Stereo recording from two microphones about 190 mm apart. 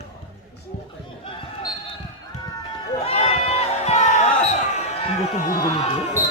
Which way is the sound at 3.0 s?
30° left (ahead or behind).